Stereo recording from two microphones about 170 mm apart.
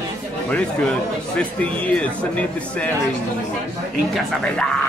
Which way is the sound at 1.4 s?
5° left (ahead or behind).